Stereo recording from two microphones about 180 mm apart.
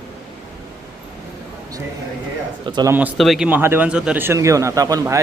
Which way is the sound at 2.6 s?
25° right (ahead or behind).